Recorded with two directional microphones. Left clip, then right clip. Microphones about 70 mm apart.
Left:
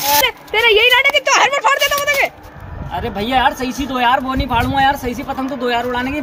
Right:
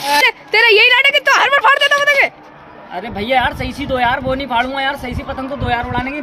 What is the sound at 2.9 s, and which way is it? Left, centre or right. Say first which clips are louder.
Speech: right 1 dB; right.